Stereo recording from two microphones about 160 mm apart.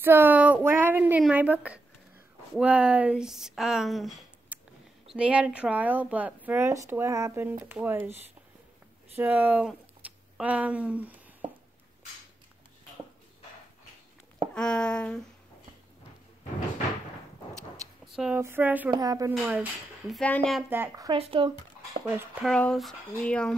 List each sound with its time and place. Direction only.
0.0 s speech: 15° right (ahead or behind)
11.4 s a sound: 40° right (ahead or behind)
14.5 s speech: 5° left (ahead or behind)
18.0 s speech: 5° right (ahead or behind)
18.9 s speech: 20° right (ahead or behind)
19.3 s speech: 10° right (ahead or behind)
20.2 s speech: 10° left (ahead or behind)
20.7 s speech: 15° right (ahead or behind)
21.2 s speech: 35° right (ahead or behind)
22.4 s speech: 5° left (ahead or behind)